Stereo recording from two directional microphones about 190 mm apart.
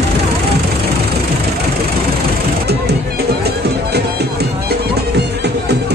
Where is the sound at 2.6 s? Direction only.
60° right (ahead or behind).